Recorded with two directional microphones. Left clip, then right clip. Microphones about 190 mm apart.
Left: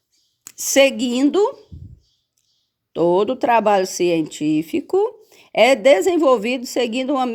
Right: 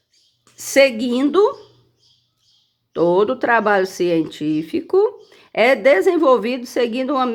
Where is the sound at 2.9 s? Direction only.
30° left (ahead or behind).